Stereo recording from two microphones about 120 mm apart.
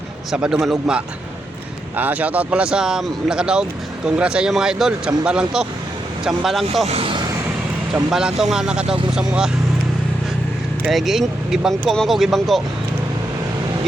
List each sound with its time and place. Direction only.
0.3 s speech: 5° right (ahead or behind)
6.8 s speech: 55° right (ahead or behind)
8.1 s speech: 5° right (ahead or behind)
10.9 s speech: centre (ahead or behind)